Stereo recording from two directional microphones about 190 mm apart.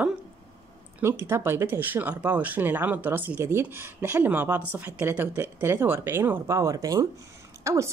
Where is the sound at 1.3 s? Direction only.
10° right (ahead or behind).